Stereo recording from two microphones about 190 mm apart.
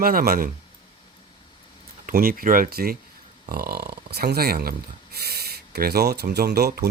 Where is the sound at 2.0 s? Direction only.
50° right (ahead or behind).